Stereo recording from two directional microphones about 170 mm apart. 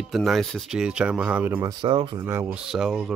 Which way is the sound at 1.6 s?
25° right (ahead or behind).